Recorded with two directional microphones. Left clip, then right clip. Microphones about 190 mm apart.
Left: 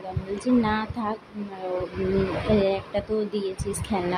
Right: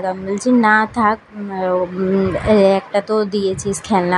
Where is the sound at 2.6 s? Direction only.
20° right (ahead or behind).